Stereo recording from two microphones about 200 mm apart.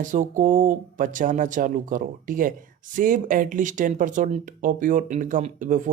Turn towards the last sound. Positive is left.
turn(degrees=-40)  # may be behind; listen again after turning